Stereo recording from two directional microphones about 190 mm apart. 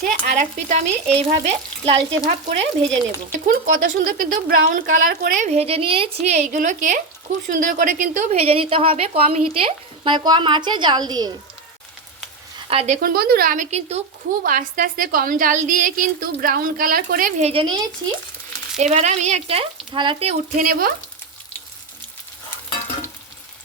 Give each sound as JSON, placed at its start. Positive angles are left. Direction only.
{"t": 0.0, "sound": "a woman's voice", "side_deg": -40}
{"t": 2.8, "sound": "speech", "side_deg": 5}
{"t": 3.4, "sound": "a woman's voice", "side_deg": -45}
{"t": 12.6, "sound": "speech", "side_deg": -35}
{"t": 13.0, "sound": "a woman's voice", "side_deg": -50}
{"t": 14.4, "sound": "a woman's voice", "side_deg": -45}
{"t": 18.8, "sound": "a woman's voice", "side_deg": -35}
{"t": 20.6, "sound": "a woman's voice", "side_deg": -50}